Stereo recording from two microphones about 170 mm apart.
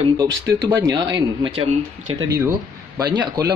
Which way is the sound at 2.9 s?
25° right (ahead or behind).